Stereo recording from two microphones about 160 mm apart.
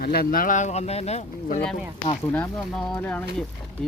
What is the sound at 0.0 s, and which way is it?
Speech, 75° left (ahead or behind).